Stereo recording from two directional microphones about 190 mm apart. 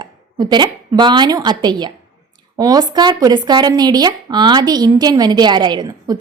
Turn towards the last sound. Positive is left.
turn(degrees=-20)  # may be behind; listen again after turning